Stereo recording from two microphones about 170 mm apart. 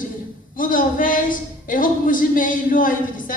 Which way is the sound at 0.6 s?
55° left (ahead or behind).